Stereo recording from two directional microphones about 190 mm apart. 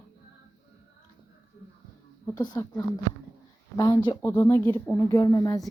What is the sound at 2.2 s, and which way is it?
Speech, 20° left (ahead or behind).